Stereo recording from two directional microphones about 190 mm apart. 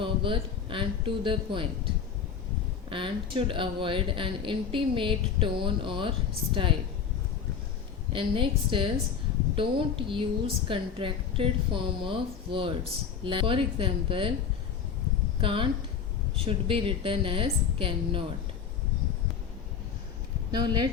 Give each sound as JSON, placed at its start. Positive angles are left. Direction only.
{"t": 0.0, "sound": "speech", "side_deg": -25}
{"t": 2.9, "sound": "speech", "side_deg": -25}
{"t": 8.1, "sound": "speech", "side_deg": -25}
{"t": 15.4, "sound": "speech", "side_deg": -25}
{"t": 20.5, "sound": "speech", "side_deg": -20}